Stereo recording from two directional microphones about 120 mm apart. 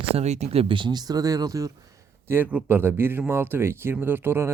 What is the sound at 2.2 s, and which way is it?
A man's voice, 15° right (ahead or behind).